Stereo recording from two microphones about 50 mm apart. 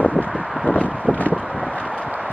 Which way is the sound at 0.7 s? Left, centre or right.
Left.